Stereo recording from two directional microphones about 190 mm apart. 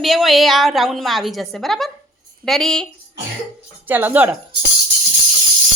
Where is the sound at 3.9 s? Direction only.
10° right (ahead or behind).